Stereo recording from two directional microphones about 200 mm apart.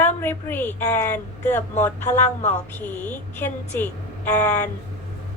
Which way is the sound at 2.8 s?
10° left (ahead or behind).